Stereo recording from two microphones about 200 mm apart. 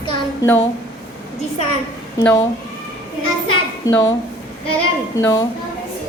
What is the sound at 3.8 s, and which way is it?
Speech, 15° left (ahead or behind).